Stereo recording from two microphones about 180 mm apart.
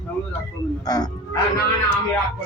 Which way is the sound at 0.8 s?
20° left (ahead or behind).